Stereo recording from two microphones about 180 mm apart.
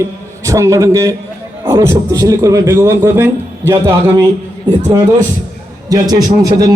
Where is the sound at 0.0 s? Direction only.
15° right (ahead or behind).